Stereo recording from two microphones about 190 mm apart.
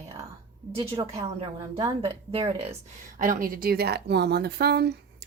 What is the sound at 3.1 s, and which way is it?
Speech, 45° right (ahead or behind).